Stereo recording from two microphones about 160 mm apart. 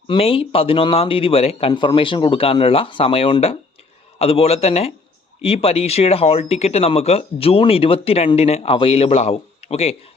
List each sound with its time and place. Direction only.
0.1 s speech: 35° left (ahead or behind)